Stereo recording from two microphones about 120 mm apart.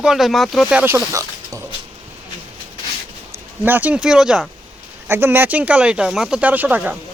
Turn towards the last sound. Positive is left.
turn(degrees=-15)  # may be behind; listen again after turning